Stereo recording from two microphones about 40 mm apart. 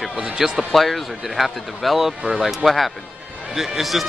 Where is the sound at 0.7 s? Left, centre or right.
Centre.